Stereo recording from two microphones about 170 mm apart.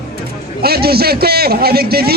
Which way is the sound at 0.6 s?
65° right (ahead or behind).